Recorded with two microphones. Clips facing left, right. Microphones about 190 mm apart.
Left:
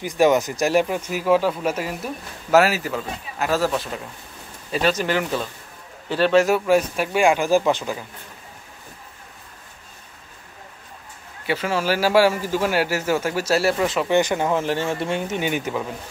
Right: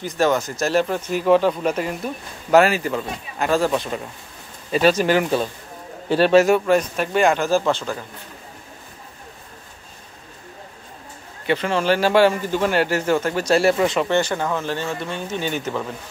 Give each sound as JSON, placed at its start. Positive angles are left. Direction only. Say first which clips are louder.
{"t": 0.0, "sound": "speech", "louder": "left 2 dB", "side_deg": 15}
{"t": 4.8, "sound": "a man's voice", "louder": "right 5 dB", "side_deg": -10}
{"t": 6.4, "sound": "speech", "louder": "right 1 dB", "side_deg": 5}
{"t": 11.4, "sound": "speech", "louder": "right 3 dB", "side_deg": 5}
{"t": 14.1, "sound": "speech", "louder": "left 2 dB", "side_deg": 15}